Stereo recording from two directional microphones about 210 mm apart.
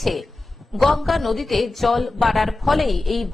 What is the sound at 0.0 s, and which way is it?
Speech, centre (ahead or behind).